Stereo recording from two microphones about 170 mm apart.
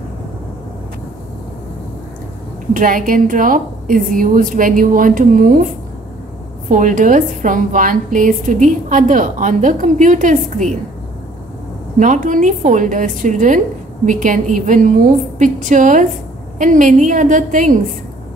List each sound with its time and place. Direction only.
2.7 s a woman's voice: 50° right (ahead or behind)
6.7 s a woman's voice: 50° right (ahead or behind)
12.0 s a woman's voice: 50° right (ahead or behind)